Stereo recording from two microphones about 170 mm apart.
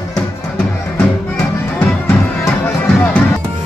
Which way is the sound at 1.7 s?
10° left (ahead or behind).